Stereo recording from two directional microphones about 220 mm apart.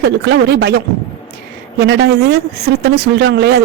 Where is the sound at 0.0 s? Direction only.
50° right (ahead or behind).